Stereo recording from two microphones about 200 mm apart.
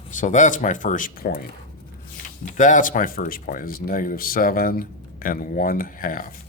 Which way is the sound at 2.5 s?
40° left (ahead or behind).